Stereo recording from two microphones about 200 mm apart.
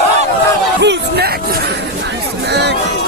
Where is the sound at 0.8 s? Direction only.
55° right (ahead or behind).